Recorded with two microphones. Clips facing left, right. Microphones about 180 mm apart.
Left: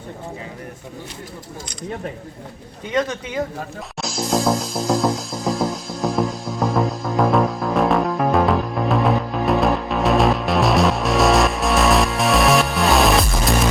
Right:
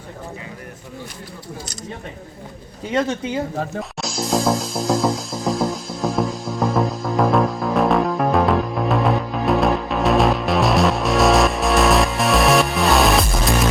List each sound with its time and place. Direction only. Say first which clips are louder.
2.9 s speech: right 1 dB; 30° right (ahead or behind)
3.8 s music: right 1 dB; centre (ahead or behind)